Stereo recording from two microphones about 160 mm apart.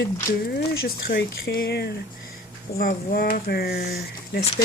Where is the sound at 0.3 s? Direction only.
85° left.